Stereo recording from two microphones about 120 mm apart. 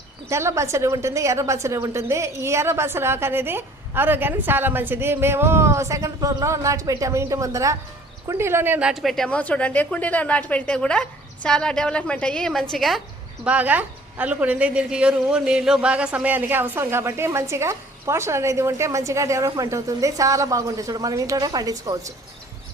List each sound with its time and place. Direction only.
0.3 s a woman's voice: 25° right (ahead or behind)
8.9 s a woman's voice: centre (ahead or behind)
13.4 s a woman's voice: 10° right (ahead or behind); by 22.1 s 30° right (ahead or behind)